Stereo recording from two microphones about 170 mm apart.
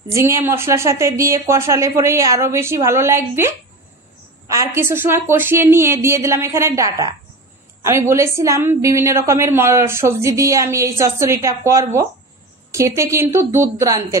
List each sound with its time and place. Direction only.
0.1 s a woman's voice: 15° right (ahead or behind)